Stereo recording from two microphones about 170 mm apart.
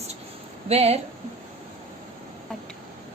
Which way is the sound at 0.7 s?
35° right (ahead or behind).